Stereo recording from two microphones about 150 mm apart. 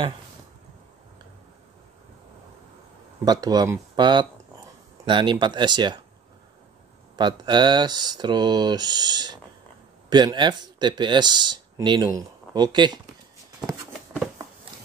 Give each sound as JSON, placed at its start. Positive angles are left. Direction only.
{"t": 3.3, "sound": "speech", "side_deg": -25}
{"t": 7.2, "sound": "speech", "side_deg": -30}